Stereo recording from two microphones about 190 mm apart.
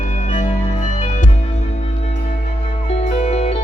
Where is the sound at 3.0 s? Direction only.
35° left (ahead or behind).